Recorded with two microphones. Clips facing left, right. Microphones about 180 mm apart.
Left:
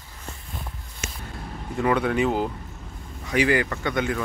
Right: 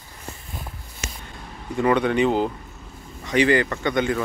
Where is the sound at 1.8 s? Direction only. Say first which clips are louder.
Right 3 dB; centre (ahead or behind).